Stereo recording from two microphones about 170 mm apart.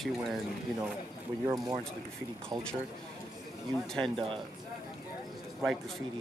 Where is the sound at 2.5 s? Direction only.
25° right (ahead or behind).